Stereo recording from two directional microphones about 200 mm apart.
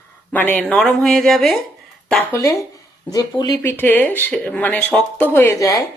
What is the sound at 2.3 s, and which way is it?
Speech, 15° left (ahead or behind).